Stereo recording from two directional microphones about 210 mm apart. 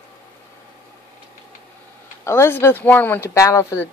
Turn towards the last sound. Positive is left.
turn(degrees=15)  # may be behind; listen again after turning